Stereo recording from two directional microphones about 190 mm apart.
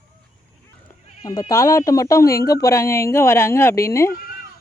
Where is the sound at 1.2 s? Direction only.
20° left (ahead or behind).